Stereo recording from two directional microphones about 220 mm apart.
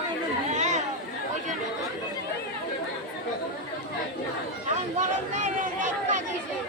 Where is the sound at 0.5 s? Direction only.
30° right (ahead or behind).